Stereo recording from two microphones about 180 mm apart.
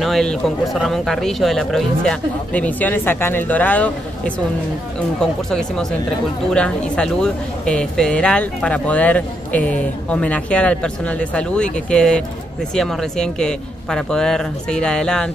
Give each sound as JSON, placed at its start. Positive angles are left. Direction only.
{"t": 0.0, "sound": "speech", "side_deg": 0}
{"t": 5.2, "sound": "speech", "side_deg": 5}